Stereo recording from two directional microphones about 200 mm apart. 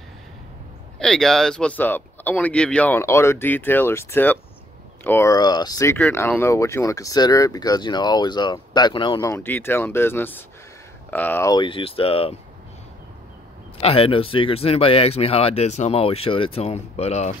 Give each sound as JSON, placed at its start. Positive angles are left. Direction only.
{"t": 0.9, "sound": "speech", "side_deg": 5}
{"t": 9.3, "sound": "speech", "side_deg": 10}
{"t": 11.5, "sound": "speech", "side_deg": 25}
{"t": 13.7, "sound": "speech", "side_deg": 30}